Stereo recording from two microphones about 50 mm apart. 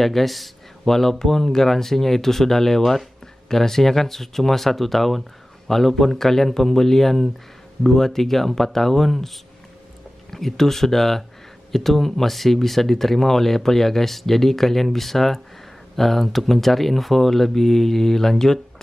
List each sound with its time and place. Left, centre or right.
0.0 s speech: centre
10.3 s speech: centre